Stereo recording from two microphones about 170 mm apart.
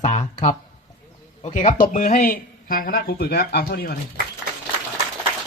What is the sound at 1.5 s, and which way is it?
Speech, 50° left (ahead or behind).